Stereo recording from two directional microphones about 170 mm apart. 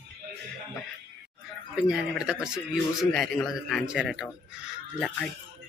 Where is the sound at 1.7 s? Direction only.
5° right (ahead or behind).